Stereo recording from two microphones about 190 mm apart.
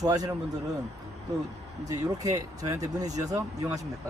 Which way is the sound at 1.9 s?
20° right (ahead or behind).